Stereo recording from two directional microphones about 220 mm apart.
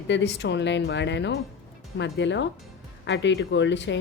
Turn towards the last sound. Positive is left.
turn(degrees=55)  # may be behind; listen again after turning